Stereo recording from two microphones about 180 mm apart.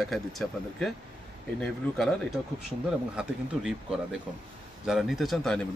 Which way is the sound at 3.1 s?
5° right (ahead or behind).